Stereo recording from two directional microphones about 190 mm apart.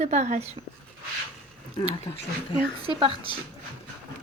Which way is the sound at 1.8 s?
25° left (ahead or behind).